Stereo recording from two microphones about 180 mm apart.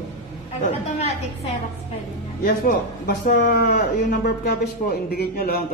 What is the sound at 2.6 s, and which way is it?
Speech, 55° left (ahead or behind).